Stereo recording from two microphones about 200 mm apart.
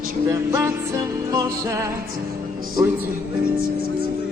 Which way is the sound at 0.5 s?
15° right (ahead or behind).